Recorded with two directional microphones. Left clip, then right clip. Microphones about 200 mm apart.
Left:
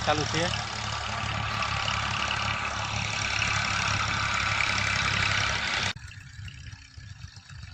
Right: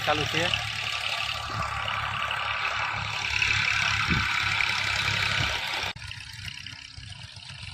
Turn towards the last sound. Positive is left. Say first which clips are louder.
# left 1 dB
turn(degrees=10)  # may be behind; listen again after turning